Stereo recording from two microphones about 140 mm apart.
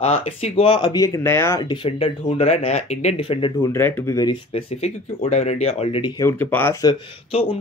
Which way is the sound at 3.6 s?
15° left (ahead or behind).